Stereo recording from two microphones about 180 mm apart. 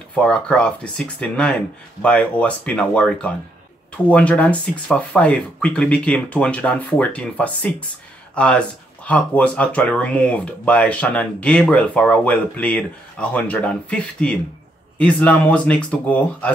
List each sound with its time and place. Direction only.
0.1 s speech: 5° left (ahead or behind)